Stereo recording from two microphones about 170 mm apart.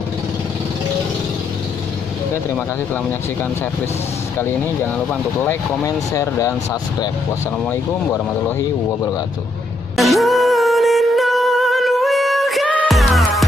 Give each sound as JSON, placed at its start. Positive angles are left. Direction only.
{"t": 4.9, "sound": "speech", "side_deg": 10}
{"t": 9.9, "sound": "music", "side_deg": 0}